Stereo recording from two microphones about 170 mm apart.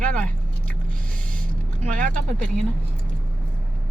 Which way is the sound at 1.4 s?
5° left (ahead or behind).